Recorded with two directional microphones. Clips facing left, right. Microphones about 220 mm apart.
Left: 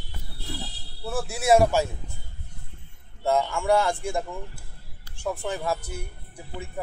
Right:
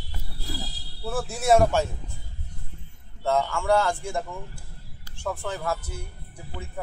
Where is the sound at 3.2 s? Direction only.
10° left (ahead or behind).